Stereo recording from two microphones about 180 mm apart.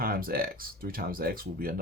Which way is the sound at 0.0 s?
55° right (ahead or behind).